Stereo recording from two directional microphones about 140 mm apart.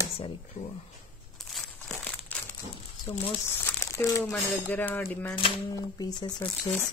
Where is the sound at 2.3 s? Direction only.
10° left (ahead or behind).